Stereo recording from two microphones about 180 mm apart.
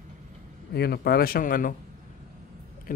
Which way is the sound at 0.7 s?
60° left (ahead or behind).